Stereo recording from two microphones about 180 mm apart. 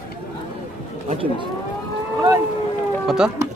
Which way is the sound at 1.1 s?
30° right (ahead or behind).